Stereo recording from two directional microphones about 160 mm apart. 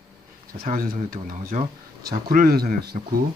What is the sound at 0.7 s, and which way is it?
Speech, 60° right (ahead or behind).